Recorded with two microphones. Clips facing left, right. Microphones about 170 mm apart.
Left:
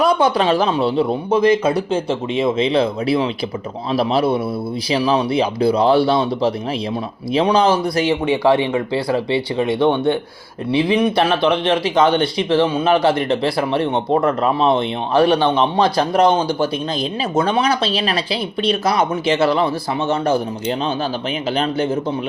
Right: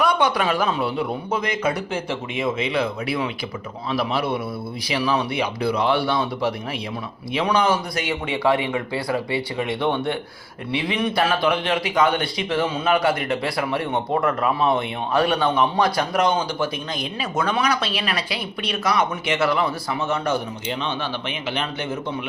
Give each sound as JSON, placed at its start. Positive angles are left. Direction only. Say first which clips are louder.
{"t": 0.0, "sound": "speech", "louder": "left 5 dB", "side_deg": 30}